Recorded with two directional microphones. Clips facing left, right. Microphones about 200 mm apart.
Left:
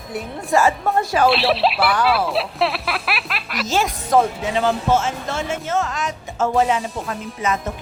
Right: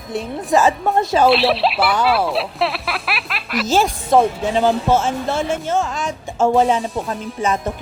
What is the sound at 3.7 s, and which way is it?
A woman's voice, 30° right (ahead or behind).